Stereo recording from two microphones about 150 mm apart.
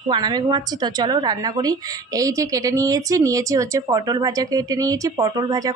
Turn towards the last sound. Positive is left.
turn(degrees=-25)  # may be behind; listen again after turning